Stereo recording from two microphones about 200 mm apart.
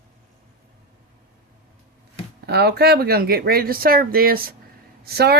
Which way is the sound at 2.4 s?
55° right (ahead or behind).